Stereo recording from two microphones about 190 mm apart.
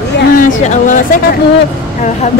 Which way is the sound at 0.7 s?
40° left (ahead or behind).